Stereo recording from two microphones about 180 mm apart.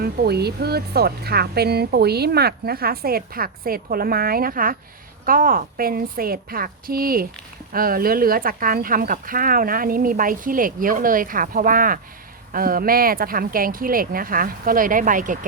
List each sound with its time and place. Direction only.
0.0 s speech: 60° right (ahead or behind)